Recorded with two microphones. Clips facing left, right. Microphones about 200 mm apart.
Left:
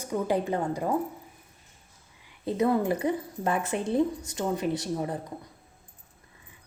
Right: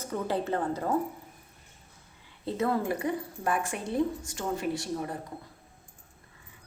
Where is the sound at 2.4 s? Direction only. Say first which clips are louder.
Left 4 dB; 15° left (ahead or behind).